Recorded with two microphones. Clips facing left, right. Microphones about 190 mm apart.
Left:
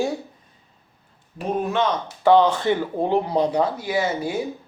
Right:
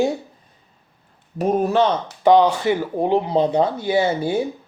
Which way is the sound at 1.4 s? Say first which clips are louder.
Right 5 dB; 40° right (ahead or behind).